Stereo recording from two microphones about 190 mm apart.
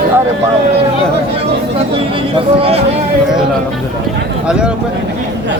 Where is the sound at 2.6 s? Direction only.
30° right (ahead or behind).